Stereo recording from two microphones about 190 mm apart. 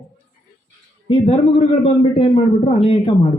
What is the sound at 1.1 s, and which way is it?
A man's voice, 30° left (ahead or behind).